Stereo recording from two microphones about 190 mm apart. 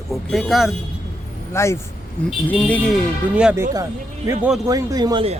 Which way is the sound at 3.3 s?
10° right (ahead or behind).